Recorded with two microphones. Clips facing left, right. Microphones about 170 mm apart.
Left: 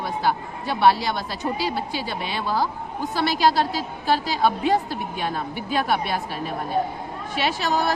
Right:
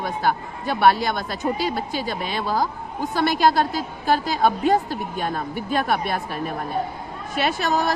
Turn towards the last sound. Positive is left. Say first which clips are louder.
# right 1 dB
turn(degrees=-50)  # may be behind; listen again after turning